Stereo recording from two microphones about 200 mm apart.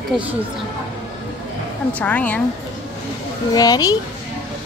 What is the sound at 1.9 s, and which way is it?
Speech, 5° left (ahead or behind).